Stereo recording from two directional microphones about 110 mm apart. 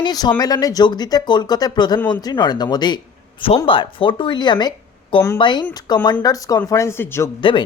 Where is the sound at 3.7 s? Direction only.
50° left (ahead or behind); by 6.9 s 30° left (ahead or behind).